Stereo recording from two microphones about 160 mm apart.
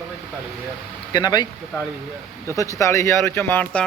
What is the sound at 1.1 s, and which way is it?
Speech, 25° left (ahead or behind).